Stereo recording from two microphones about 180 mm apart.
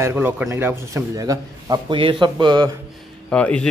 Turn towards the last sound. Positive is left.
turn(degrees=5)  # may be behind; listen again after turning